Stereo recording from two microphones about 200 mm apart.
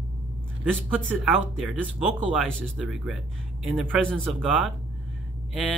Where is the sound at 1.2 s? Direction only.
Centre (ahead or behind).